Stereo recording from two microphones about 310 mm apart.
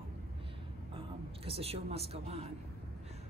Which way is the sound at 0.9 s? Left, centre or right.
Centre.